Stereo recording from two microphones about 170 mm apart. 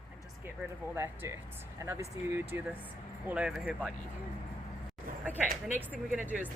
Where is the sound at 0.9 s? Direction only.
15° right (ahead or behind).